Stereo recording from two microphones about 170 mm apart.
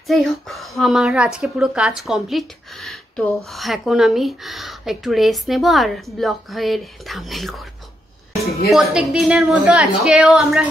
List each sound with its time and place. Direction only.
0.0 s a woman's voice: centre (ahead or behind)